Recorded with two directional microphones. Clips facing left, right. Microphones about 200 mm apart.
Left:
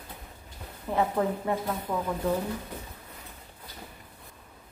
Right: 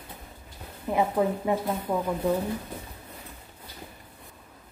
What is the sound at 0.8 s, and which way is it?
Speech, 10° right (ahead or behind).